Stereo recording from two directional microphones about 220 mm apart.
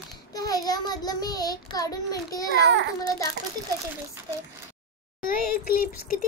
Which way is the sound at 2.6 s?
55° right (ahead or behind).